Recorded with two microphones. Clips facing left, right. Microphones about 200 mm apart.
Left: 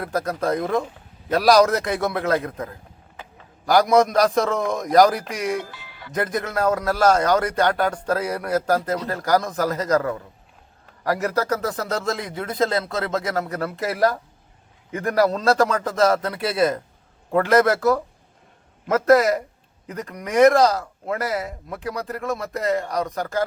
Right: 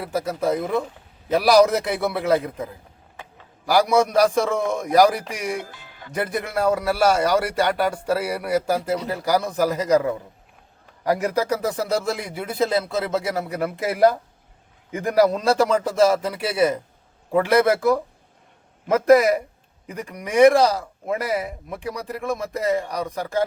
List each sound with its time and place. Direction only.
0.0 s a man's voice: 5° right (ahead or behind)
5.7 s music: 45° right (ahead or behind)
6.1 s a man's voice: 10° right (ahead or behind)